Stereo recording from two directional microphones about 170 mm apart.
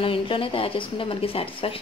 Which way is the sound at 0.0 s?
30° left (ahead or behind).